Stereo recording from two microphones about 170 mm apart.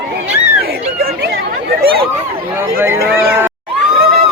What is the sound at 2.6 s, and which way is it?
Speech, 15° right (ahead or behind).